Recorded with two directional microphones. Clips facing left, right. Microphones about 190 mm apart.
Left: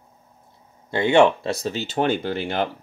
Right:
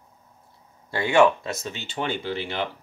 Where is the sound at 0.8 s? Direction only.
25° left (ahead or behind); by 2.7 s 45° left (ahead or behind).